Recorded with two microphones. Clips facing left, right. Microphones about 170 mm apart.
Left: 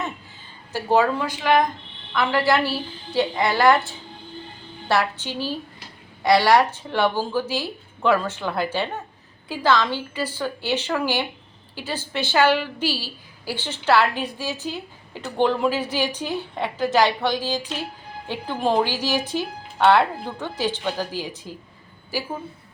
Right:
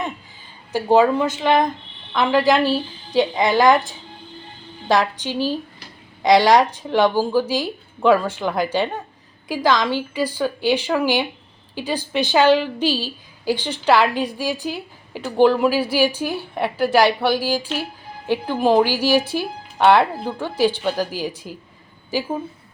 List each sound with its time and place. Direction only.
0.7 s a woman's voice: 15° right (ahead or behind)